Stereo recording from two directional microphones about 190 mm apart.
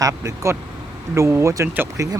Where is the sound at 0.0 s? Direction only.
15° right (ahead or behind).